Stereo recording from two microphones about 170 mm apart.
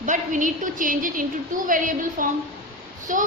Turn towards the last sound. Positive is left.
turn(degrees=-50)  # may be behind; listen again after turning